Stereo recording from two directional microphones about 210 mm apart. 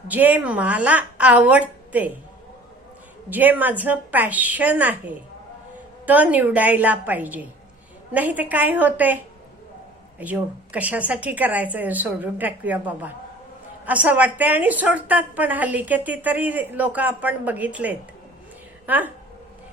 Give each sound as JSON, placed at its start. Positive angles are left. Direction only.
{"t": 0.1, "sound": "a woman's voice", "side_deg": -10}
{"t": 3.2, "sound": "a woman's voice", "side_deg": -10}